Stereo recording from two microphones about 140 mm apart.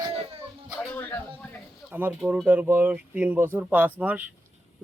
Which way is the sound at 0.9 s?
15° left (ahead or behind).